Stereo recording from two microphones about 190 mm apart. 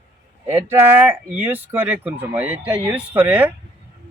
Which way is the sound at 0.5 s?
10° right (ahead or behind).